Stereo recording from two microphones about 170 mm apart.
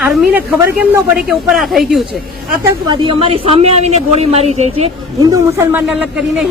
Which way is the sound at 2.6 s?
30° right (ahead or behind).